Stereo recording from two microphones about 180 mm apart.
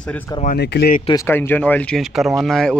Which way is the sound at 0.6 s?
60° left (ahead or behind).